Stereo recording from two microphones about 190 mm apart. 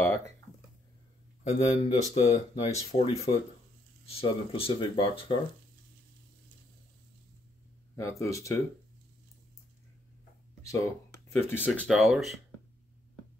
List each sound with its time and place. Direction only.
1.4 s speech: 35° left (ahead or behind)
7.9 s speech: 15° left (ahead or behind)
10.6 s speech: 15° left (ahead or behind)
11.9 s speech: centre (ahead or behind)